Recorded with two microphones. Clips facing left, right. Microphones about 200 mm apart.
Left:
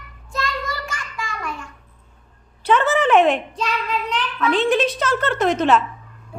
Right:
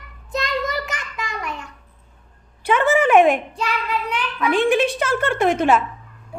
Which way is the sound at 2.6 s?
10° right (ahead or behind).